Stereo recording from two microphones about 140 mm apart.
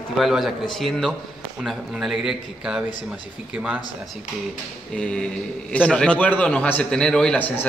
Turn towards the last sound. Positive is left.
turn(degrees=10)  # may be behind; listen again after turning